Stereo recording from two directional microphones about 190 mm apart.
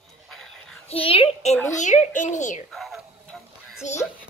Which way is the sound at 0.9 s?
30° left (ahead or behind).